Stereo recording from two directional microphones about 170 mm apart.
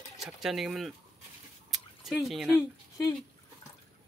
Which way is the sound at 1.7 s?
Centre (ahead or behind).